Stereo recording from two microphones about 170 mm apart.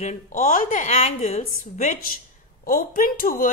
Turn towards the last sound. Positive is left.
turn(degrees=55)  # may be behind; listen again after turning